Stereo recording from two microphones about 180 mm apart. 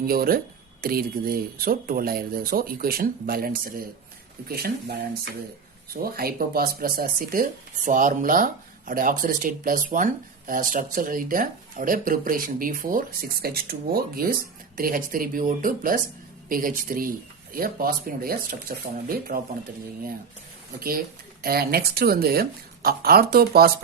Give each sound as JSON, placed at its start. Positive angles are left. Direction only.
{"t": 0.0, "sound": "speech", "side_deg": -55}
{"t": 20.7, "sound": "speech", "side_deg": -55}